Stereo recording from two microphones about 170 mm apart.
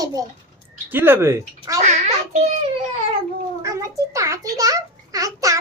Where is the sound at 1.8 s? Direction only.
40° right (ahead or behind).